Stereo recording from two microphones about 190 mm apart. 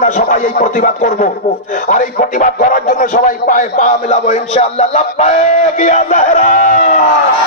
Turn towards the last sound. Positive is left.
turn(degrees=45)  # may be behind; listen again after turning